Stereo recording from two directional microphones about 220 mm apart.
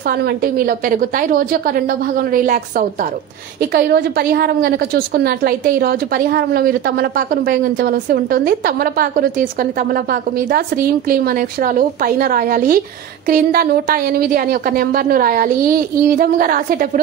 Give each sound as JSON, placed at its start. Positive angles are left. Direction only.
{"t": 0.1, "sound": "a woman's voice", "side_deg": -45}
{"t": 3.7, "sound": "a woman's voice", "side_deg": -45}